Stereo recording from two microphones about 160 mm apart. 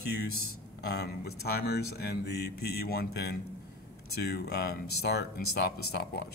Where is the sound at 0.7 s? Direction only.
90° left.